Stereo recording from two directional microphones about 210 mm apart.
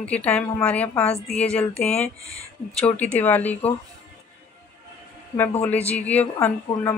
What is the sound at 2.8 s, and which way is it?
Speech, 5° left (ahead or behind).